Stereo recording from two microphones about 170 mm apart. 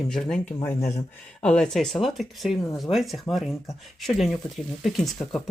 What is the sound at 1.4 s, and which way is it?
Speech, 5° left (ahead or behind).